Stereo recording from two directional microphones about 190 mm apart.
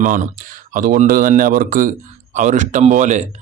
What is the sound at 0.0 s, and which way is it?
A man's voice, 45° right (ahead or behind).